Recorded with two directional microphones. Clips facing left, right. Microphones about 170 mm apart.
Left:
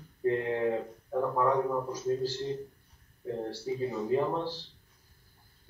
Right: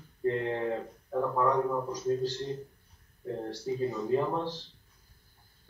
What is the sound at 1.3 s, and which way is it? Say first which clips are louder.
Speech: even; 10° left (ahead or behind).